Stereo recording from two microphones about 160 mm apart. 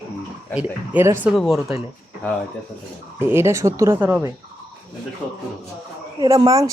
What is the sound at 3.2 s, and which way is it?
Speech, 15° right (ahead or behind).